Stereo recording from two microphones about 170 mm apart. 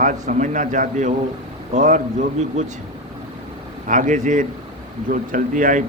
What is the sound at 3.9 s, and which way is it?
Speech, 50° right (ahead or behind).